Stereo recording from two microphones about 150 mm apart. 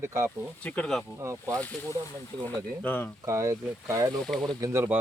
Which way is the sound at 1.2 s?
20° right (ahead or behind).